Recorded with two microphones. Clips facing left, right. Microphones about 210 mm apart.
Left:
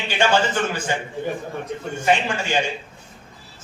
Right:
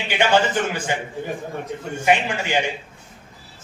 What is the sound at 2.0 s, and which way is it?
Speech, 15° right (ahead or behind).